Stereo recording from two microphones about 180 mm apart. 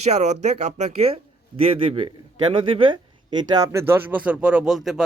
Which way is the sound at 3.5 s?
20° right (ahead or behind).